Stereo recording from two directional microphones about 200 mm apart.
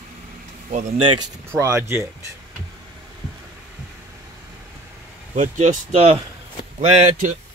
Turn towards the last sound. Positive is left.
turn(degrees=-40)  # may be behind; listen again after turning